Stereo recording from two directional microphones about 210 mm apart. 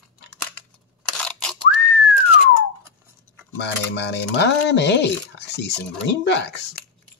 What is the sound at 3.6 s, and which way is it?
Speech, 55° left (ahead or behind).